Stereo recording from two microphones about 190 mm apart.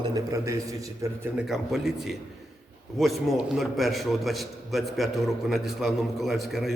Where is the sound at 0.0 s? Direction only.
20° right (ahead or behind).